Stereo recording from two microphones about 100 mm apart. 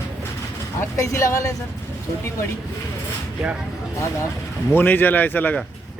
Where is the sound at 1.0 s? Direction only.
30° left (ahead or behind).